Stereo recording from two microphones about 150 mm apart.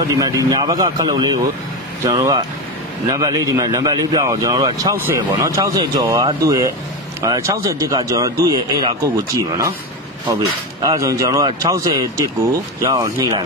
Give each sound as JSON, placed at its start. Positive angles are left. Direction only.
{"t": 0.2, "sound": "speech", "side_deg": -25}
{"t": 3.1, "sound": "speech", "side_deg": -25}